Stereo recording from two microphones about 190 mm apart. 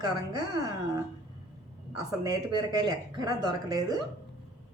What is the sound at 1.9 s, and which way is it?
Speech, 20° right (ahead or behind).